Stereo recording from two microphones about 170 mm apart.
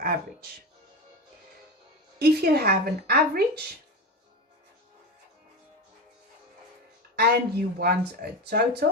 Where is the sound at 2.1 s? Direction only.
65° right (ahead or behind).